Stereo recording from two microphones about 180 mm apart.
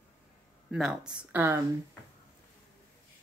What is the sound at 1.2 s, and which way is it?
Speech, 10° right (ahead or behind).